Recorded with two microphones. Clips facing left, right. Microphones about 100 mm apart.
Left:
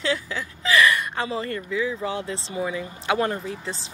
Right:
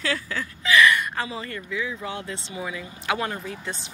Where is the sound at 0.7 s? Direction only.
30° left (ahead or behind).